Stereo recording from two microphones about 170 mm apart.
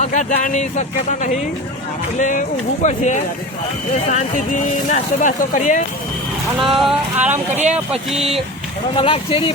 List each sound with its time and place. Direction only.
0.0 s speech: 45° left (ahead or behind)
6.6 s speech: centre (ahead or behind)
8.1 s speech: 35° right (ahead or behind)
9.0 s speech: 30° left (ahead or behind)